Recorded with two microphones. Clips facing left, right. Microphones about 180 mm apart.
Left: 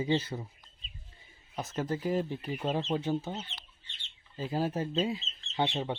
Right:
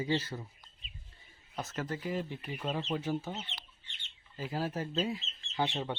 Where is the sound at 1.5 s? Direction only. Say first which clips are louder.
Left 4 dB; 25° left (ahead or behind).